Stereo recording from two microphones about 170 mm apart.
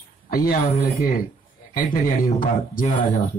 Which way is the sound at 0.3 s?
55° left (ahead or behind).